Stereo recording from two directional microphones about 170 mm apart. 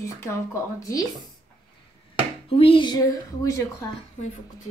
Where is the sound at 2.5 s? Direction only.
35° left (ahead or behind).